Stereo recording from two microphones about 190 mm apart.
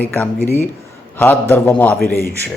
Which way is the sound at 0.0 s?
10° left (ahead or behind).